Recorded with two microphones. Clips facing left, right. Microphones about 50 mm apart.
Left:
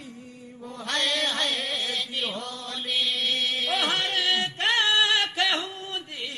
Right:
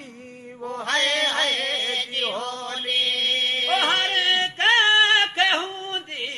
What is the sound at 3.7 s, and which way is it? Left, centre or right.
Music, right.